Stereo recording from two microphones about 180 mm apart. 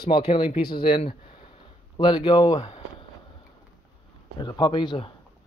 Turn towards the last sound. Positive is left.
turn(degrees=25)  # may be behind; listen again after turning